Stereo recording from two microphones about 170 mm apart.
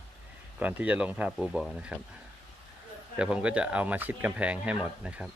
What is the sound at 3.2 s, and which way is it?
Speech, 5° right (ahead or behind).